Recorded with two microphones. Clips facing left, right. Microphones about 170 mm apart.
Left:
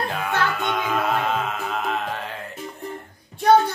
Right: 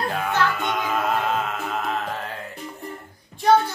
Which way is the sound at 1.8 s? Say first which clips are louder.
Even; centre (ahead or behind).